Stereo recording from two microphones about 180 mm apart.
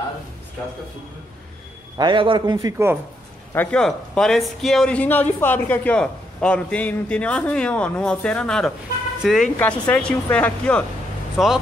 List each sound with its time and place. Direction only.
2.0 s a man's voice: 25° right (ahead or behind)
3.5 s a man's voice: 5° left (ahead or behind)